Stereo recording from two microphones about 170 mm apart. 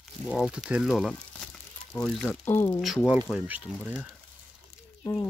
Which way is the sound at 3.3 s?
5° right (ahead or behind).